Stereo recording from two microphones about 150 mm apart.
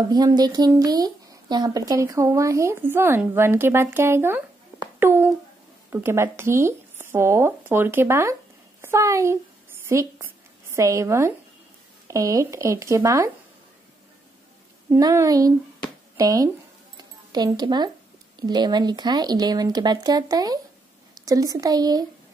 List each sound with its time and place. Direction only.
0.1 s a child's voice: 30° right (ahead or behind)
14.9 s speech: 20° right (ahead or behind)
16.9 s a sound: 25° right (ahead or behind)
18.4 s a woman's voice: 30° right (ahead or behind)